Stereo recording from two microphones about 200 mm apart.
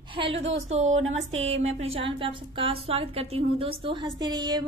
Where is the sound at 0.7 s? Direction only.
35° right (ahead or behind).